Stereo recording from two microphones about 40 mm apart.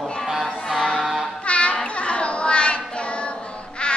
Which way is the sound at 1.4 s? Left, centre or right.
Left.